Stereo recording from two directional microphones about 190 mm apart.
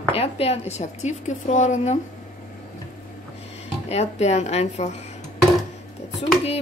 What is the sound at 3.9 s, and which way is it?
A woman's voice, 35° left (ahead or behind).